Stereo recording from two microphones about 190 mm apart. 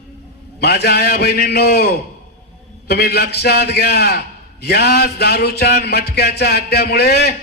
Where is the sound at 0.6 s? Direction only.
60° left (ahead or behind).